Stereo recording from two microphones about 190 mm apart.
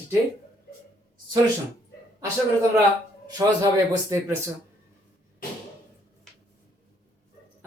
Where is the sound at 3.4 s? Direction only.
20° right (ahead or behind).